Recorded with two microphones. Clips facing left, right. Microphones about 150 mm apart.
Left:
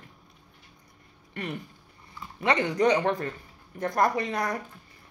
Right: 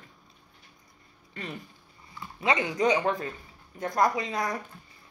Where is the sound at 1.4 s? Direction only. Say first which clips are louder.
Left 4 dB; 65° left (ahead or behind).